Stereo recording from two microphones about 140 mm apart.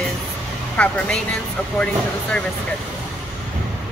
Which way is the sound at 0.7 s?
10° left (ahead or behind).